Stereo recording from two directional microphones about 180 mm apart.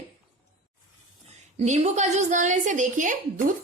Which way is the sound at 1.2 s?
35° right (ahead or behind).